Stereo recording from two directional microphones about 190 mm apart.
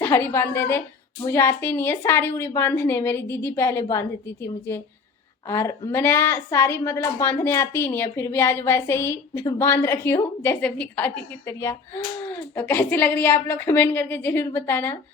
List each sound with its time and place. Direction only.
0.0 s a woman's voice: 10° left (ahead or behind)